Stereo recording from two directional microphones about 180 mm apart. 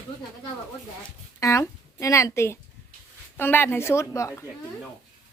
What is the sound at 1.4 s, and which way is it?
A woman's voice, 15° left (ahead or behind).